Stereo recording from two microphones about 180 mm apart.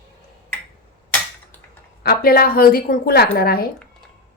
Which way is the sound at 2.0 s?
55° left (ahead or behind).